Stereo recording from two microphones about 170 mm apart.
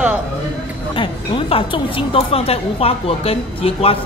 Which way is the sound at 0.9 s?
30° left (ahead or behind).